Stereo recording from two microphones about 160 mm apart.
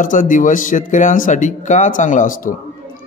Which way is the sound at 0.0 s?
55° left (ahead or behind).